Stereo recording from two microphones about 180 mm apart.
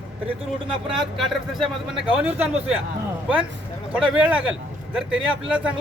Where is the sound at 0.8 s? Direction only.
5° right (ahead or behind).